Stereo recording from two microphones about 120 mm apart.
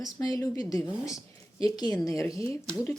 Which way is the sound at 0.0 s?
30° left (ahead or behind).